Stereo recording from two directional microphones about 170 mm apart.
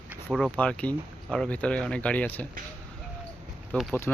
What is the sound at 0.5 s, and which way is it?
Speech, 10° left (ahead or behind).